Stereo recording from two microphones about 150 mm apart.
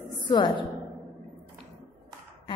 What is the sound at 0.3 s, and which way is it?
Speech, 30° left (ahead or behind).